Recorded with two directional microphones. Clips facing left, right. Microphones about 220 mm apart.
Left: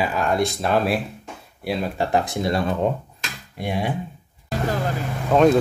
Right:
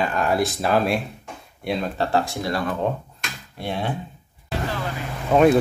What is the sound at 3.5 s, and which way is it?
Speech, 10° left (ahead or behind).